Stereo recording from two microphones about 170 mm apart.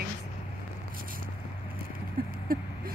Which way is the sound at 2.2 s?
60° right (ahead or behind).